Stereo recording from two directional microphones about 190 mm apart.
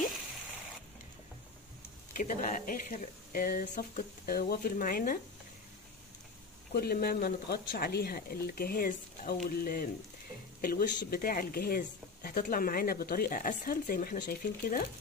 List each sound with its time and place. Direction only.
2.1 s speech: 45° left (ahead or behind)
6.7 s speech: 55° left (ahead or behind)